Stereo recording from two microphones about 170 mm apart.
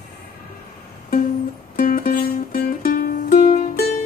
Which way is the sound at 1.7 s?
55° left (ahead or behind).